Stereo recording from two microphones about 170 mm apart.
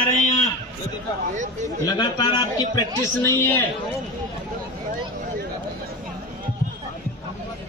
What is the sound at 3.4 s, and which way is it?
Speech, 15° left (ahead or behind).